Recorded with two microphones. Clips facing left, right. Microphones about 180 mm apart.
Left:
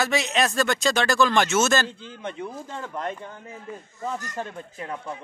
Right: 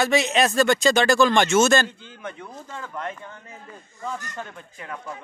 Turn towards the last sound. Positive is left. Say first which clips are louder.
# left 2 dB
turn(degrees=25)  # may be behind; listen again after turning